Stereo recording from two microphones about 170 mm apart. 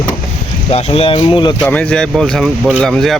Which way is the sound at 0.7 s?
35° left (ahead or behind).